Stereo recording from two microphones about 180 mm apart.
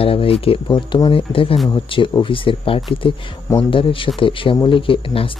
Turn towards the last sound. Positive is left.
turn(degrees=30)  # may be behind; listen again after turning